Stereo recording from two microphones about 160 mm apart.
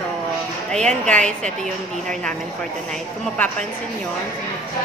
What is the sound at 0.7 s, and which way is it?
A woman's voice, 5° left (ahead or behind).